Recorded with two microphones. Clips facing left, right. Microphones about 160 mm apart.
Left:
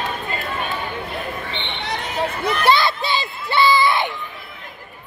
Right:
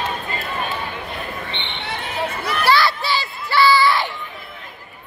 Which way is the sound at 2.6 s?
20° left (ahead or behind).